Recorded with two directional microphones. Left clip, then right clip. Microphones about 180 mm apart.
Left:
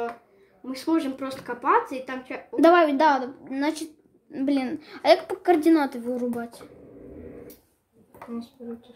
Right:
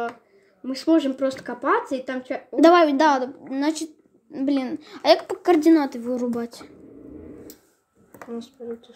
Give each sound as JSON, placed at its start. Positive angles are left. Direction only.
{"t": 0.7, "sound": "speech", "side_deg": -30}
{"t": 2.5, "sound": "speech", "side_deg": -10}
{"t": 5.7, "sound": "a woman's voice", "side_deg": 0}
{"t": 6.1, "sound": "speech", "side_deg": -20}